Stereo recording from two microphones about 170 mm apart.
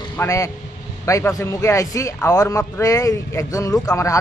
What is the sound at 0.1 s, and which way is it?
Speech, 15° left (ahead or behind).